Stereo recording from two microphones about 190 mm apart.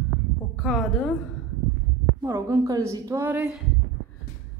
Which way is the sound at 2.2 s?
15° right (ahead or behind).